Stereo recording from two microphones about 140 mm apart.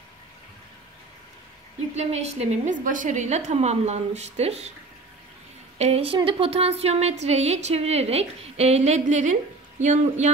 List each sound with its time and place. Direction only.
2.0 s speech: 50° right (ahead or behind)
5.8 s speech: 50° right (ahead or behind)